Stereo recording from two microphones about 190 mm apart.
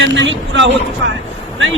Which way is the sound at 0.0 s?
75° right (ahead or behind).